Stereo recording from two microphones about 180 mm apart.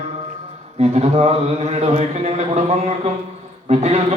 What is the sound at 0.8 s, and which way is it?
A man's voice, 35° right (ahead or behind).